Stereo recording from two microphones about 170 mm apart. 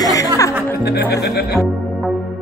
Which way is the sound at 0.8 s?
70° left (ahead or behind).